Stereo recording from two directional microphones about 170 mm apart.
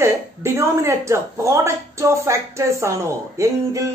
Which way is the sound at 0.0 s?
15° right (ahead or behind).